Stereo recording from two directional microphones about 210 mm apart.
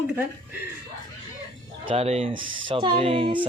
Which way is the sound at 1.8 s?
30° right (ahead or behind).